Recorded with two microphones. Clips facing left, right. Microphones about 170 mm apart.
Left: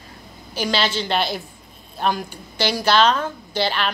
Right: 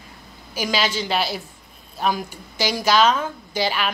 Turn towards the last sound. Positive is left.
turn(degrees=-10)  # may be behind; listen again after turning